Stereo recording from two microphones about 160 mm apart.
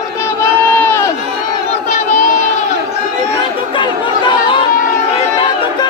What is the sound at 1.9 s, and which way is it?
Crowd, 50° left (ahead or behind).